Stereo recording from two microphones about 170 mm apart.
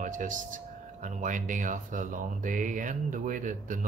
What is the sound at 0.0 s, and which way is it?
Speech, 50° right (ahead or behind).